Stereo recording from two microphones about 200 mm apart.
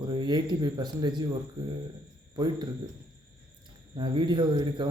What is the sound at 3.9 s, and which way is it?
Speech, 20° right (ahead or behind).